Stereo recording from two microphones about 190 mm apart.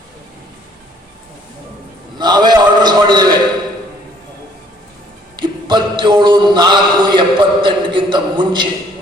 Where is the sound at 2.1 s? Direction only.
20° right (ahead or behind).